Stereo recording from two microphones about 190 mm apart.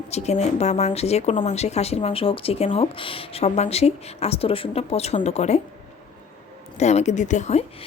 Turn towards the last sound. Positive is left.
turn(degrees=40)  # may be behind; listen again after turning